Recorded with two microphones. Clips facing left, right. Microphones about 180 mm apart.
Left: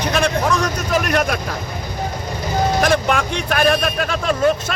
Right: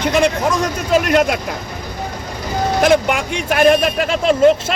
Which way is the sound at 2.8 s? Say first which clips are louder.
Right 3 dB; 15° right (ahead or behind).